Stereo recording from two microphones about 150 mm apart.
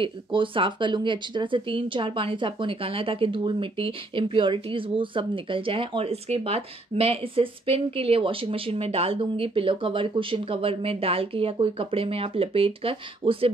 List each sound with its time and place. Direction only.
0.0 s speech: 35° right (ahead or behind)